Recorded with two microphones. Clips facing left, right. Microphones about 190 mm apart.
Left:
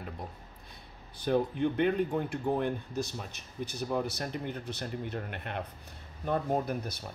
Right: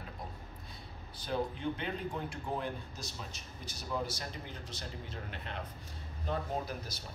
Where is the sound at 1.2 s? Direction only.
55° left (ahead or behind).